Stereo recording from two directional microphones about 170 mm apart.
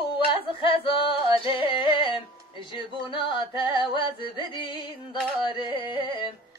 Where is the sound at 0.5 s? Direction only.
30° left (ahead or behind).